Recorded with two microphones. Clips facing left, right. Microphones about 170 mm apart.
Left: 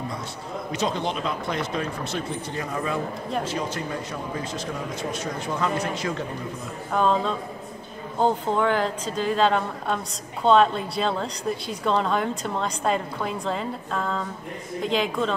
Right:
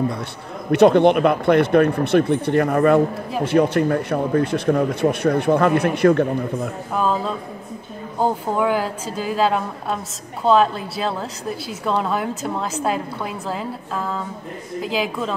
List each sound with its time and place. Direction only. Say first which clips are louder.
0.7 s speech: right 15 dB; 60° right (ahead or behind)
6.9 s a woman's voice: even; 5° right (ahead or behind)